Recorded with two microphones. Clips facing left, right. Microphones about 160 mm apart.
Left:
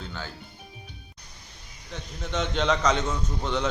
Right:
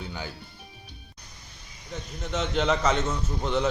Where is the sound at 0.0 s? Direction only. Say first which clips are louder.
Right 1 dB; 15° right (ahead or behind).